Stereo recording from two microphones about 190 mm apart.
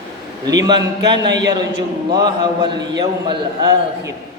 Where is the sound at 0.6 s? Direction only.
20° right (ahead or behind).